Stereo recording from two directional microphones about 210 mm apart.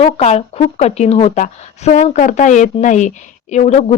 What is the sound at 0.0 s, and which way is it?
Speech, 30° left (ahead or behind).